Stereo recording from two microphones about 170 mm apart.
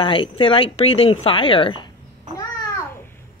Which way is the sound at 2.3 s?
15° left (ahead or behind).